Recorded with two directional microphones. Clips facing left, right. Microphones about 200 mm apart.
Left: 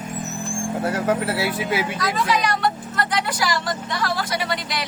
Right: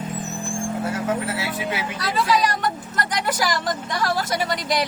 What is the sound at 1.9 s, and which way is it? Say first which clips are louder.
Speech: right 1 dB; 35° right (ahead or behind).